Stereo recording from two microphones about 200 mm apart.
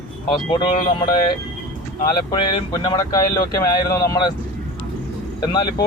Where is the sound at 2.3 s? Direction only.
25° left (ahead or behind).